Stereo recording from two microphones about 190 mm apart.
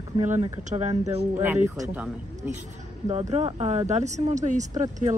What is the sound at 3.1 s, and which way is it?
Speech, 35° right (ahead or behind).